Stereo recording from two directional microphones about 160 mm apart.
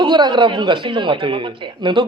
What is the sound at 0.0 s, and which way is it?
Speech, 30° right (ahead or behind).